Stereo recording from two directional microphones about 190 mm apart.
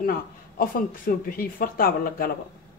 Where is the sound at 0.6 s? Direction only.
50° left (ahead or behind).